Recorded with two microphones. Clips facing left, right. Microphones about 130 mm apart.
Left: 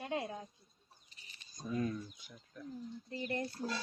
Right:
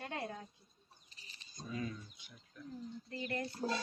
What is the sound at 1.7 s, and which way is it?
Speech, 50° left (ahead or behind).